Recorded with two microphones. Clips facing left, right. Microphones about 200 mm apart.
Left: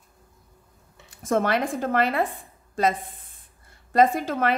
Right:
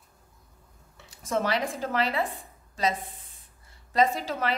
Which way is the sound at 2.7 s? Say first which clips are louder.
Left 5 dB; 50° left (ahead or behind).